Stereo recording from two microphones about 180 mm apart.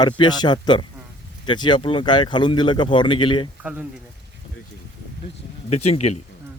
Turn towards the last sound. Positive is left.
turn(degrees=40)  # may be behind; listen again after turning